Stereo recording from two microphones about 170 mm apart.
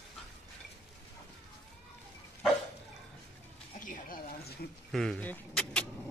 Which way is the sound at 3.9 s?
55° left (ahead or behind).